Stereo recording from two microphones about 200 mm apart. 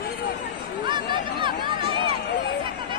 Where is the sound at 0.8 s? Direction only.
25° right (ahead or behind).